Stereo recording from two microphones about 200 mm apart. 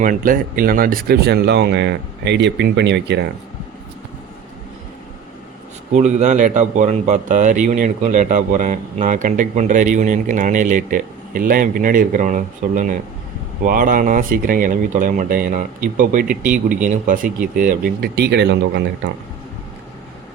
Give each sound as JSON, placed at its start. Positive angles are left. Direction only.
{"t": 0.0, "sound": "speech", "side_deg": -45}
{"t": 5.9, "sound": "a man's voice", "side_deg": -35}